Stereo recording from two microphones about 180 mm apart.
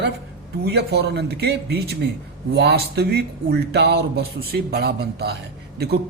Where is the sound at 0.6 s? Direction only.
65° right (ahead or behind).